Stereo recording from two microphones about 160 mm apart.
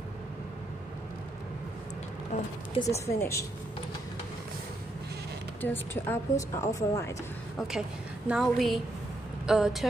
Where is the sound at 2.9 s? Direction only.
20° left (ahead or behind).